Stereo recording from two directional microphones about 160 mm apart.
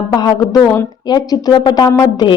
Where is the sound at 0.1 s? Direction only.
25° left (ahead or behind).